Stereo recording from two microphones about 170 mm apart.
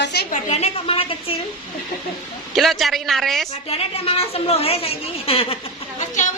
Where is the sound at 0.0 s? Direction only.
75° left (ahead or behind).